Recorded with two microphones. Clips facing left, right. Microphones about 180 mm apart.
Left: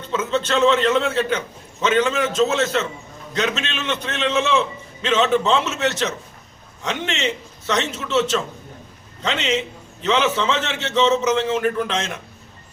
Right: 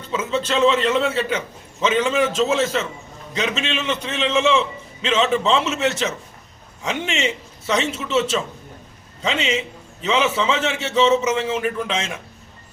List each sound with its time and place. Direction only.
0.1 s a man's voice: 5° right (ahead or behind)